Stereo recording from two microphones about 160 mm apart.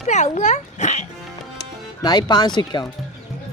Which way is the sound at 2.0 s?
25° left (ahead or behind).